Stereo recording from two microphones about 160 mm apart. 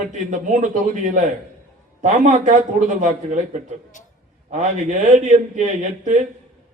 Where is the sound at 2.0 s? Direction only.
50° right (ahead or behind).